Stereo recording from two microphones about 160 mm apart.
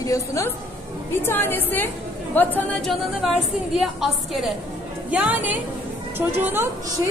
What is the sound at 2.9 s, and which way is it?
A woman's voice, centre (ahead or behind).